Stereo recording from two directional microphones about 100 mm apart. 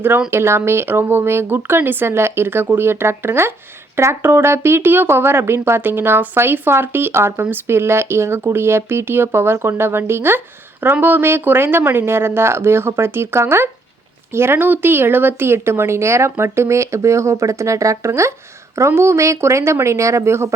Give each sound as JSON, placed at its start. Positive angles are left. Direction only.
{"t": 0.3, "sound": "speech", "side_deg": -25}